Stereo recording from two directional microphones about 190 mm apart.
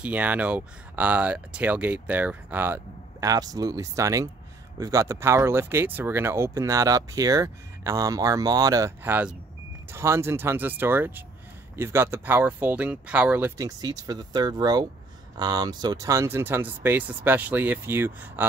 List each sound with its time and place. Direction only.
0.0 s speech: 5° right (ahead or behind)